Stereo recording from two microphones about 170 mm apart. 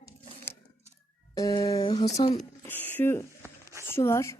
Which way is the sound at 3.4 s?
15° right (ahead or behind).